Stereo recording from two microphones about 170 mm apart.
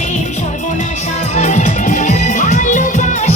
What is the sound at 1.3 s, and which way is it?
Music, 40° left (ahead or behind).